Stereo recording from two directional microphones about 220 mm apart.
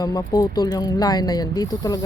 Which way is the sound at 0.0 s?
15° left (ahead or behind).